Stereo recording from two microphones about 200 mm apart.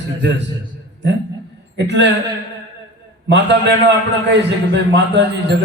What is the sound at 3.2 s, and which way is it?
A man's voice, 60° right (ahead or behind).